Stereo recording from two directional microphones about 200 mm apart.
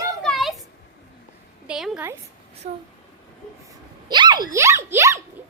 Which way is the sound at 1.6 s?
5° right (ahead or behind).